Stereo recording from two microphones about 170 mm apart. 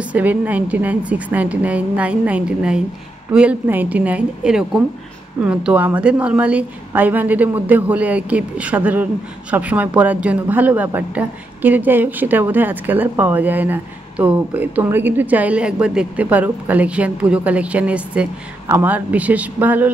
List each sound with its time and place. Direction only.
0.1 s a woman's voice: 10° right (ahead or behind)